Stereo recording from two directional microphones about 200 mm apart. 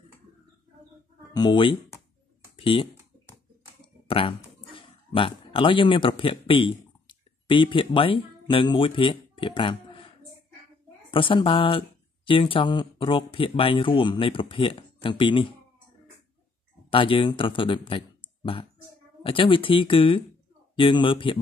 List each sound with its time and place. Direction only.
1.3 s speech: 20° left (ahead or behind)
2.5 s typing: 25° left (ahead or behind)
4.1 s speech: 25° left (ahead or behind)
11.1 s speech: 25° left (ahead or behind)
16.9 s speech: 25° left (ahead or behind)